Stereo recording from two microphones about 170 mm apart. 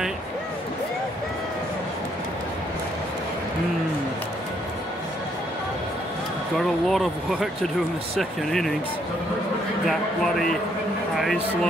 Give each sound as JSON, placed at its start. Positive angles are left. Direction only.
{"t": 6.9, "sound": "speech", "side_deg": 0}
{"t": 9.8, "sound": "speech", "side_deg": 0}